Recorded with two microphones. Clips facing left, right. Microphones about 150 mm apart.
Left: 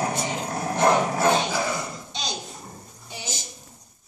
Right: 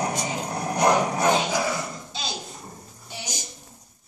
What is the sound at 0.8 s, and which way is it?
Dog, 15° right (ahead or behind).